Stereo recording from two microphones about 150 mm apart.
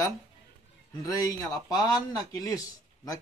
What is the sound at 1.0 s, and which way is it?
A man's voice, 25° left (ahead or behind).